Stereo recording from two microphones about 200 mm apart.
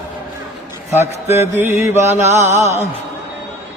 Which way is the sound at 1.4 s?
10° right (ahead or behind).